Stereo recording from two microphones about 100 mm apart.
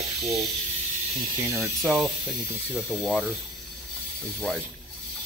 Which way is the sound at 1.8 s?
Centre (ahead or behind).